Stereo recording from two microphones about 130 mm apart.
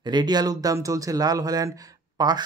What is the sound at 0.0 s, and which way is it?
Speech, 35° right (ahead or behind).